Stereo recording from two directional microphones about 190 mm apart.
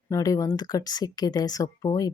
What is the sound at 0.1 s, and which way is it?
Speech, 15° left (ahead or behind).